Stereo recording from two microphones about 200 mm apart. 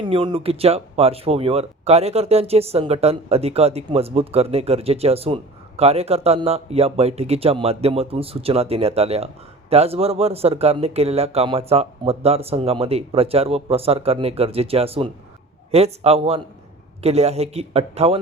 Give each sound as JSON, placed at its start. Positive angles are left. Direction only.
{"t": 0.0, "sound": "speech", "side_deg": -25}